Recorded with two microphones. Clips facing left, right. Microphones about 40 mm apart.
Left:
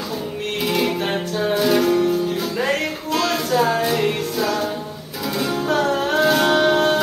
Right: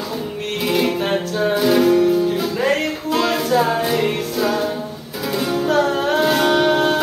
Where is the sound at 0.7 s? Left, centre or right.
Centre.